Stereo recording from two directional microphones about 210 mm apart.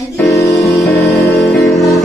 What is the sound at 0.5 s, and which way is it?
Music, centre (ahead or behind).